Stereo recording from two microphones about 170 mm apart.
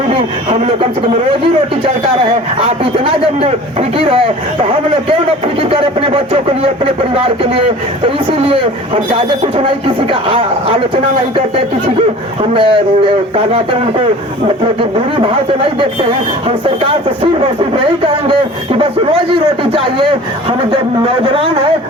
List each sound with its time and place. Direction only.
2.6 s speech: 35° right (ahead or behind)
8.0 s speech: 35° right (ahead or behind)
10.1 s speech: 30° right (ahead or behind)
12.4 s speech: 30° right (ahead or behind)
14.4 s speech: 35° right (ahead or behind)
19.3 s speech: 30° right (ahead or behind)